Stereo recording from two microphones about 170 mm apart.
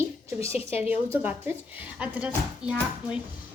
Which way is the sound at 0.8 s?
10° right (ahead or behind).